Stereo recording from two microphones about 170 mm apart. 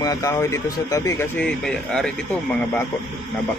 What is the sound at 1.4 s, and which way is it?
Speech, 5° left (ahead or behind).